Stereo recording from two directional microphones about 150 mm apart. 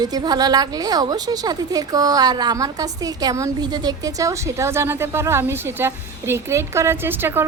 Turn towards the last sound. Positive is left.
turn(degrees=-15)  # may be behind; listen again after turning